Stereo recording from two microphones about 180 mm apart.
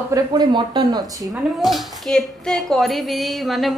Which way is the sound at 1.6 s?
Centre (ahead or behind).